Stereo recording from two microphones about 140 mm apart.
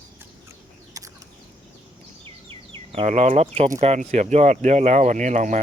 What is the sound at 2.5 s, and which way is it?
Speech, 45° right (ahead or behind).